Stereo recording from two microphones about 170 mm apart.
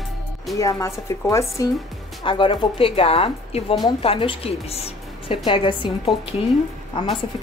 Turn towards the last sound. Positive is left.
turn(degrees=30)  # may be behind; listen again after turning